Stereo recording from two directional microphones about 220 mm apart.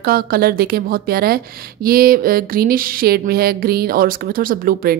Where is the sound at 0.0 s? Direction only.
45° right (ahead or behind).